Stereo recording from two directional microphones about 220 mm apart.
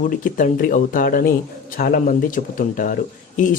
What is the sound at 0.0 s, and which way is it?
Speech, 35° left (ahead or behind).